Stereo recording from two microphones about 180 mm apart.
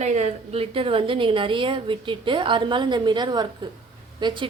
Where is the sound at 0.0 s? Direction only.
40° right (ahead or behind).